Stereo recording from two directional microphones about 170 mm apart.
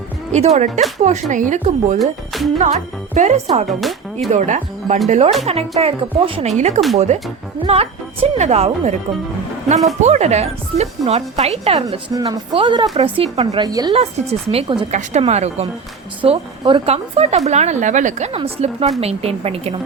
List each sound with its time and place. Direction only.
0.3 s speech: 45° right (ahead or behind)
2.0 s speech: centre (ahead or behind)
2.6 s a woman's voice: 45° right (ahead or behind)
3.7 s speech: centre (ahead or behind)
4.3 s a woman's voice: 45° right (ahead or behind)
10.0 s a woman's voice: 40° right (ahead or behind)
13.7 s speech: 20° right (ahead or behind)
13.9 s a woman's voice: 35° right (ahead or behind)